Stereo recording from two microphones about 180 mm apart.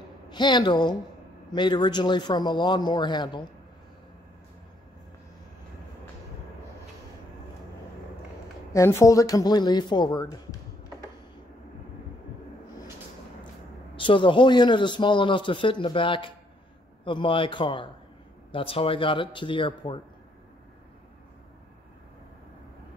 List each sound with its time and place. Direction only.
0.3 s a man's voice: 25° left (ahead or behind)
8.7 s a man's voice: 15° left (ahead or behind)
13.9 s a man's voice: 25° left (ahead or behind)